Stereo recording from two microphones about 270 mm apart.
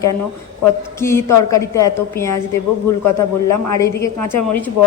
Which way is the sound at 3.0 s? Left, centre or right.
Left.